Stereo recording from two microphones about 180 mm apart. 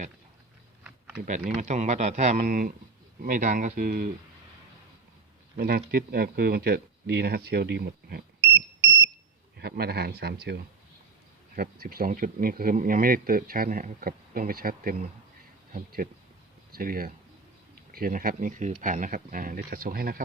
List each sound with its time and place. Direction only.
1.5 s speech: 45° right (ahead or behind)
5.5 s speech: 60° right (ahead or behind)
9.6 s speech: 60° right (ahead or behind)